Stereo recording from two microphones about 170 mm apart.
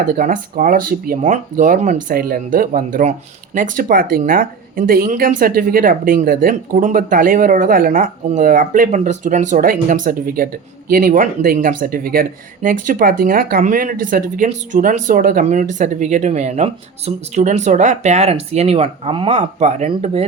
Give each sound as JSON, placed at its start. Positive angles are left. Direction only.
{"t": 0.0, "sound": "speech", "side_deg": -55}